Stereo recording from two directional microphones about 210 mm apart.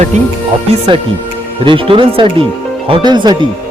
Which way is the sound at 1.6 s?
25° right (ahead or behind).